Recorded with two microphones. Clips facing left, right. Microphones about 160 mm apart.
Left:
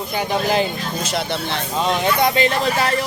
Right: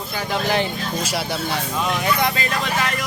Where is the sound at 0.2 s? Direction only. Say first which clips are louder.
Left 2 dB; 20° left (ahead or behind).